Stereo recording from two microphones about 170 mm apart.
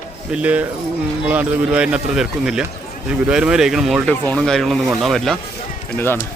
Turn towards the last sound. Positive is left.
turn(degrees=10)  # may be behind; listen again after turning